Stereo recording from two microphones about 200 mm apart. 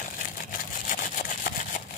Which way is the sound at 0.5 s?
40° left (ahead or behind).